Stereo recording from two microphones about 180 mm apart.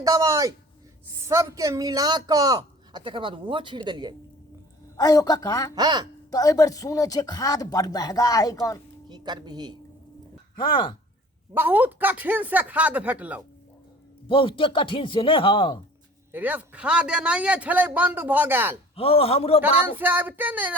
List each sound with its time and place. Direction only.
0.0 s speech: 20° right (ahead or behind)
4.9 s speech: 20° left (ahead or behind)
5.7 s speech: 25° right (ahead or behind)
6.3 s speech: 20° left (ahead or behind)
9.0 s speech: 25° right (ahead or behind)
11.5 s a man's voice: 10° right (ahead or behind)
14.3 s speech: 30° left (ahead or behind)
16.3 s a man's voice: 10° right (ahead or behind)
18.9 s a man's voice: 30° left (ahead or behind)
19.9 s a man's voice: 10° right (ahead or behind)